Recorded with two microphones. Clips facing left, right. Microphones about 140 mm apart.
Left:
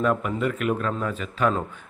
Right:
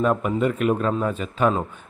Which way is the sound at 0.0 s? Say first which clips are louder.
Right 3 dB; 25° right (ahead or behind).